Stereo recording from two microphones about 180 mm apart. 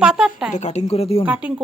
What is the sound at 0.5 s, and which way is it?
Speech, 40° left (ahead or behind).